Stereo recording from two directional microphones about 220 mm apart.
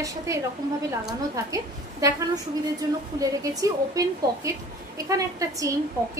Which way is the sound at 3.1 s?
15° right (ahead or behind).